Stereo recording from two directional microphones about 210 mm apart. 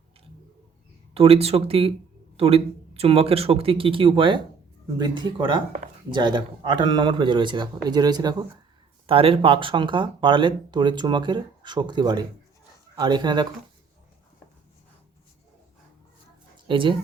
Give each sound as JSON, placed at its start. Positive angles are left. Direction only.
{"t": 1.1, "sound": "speech", "side_deg": -25}
{"t": 16.6, "sound": "speech", "side_deg": -25}